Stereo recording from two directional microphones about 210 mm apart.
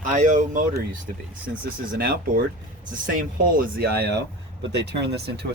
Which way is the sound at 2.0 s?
45° right (ahead or behind).